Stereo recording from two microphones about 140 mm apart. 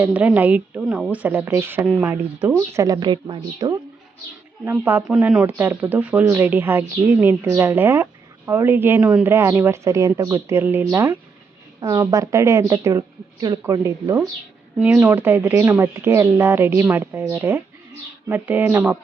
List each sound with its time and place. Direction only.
0.0 s speech: 10° right (ahead or behind); by 3.8 s 35° right (ahead or behind)
4.6 s a woman's voice: 15° right (ahead or behind)